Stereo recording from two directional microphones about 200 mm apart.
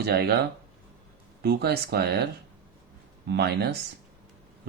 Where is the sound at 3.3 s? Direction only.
55° right (ahead or behind).